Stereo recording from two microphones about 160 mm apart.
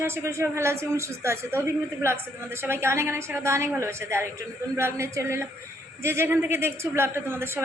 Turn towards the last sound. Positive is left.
turn(degrees=-15)  # may be behind; listen again after turning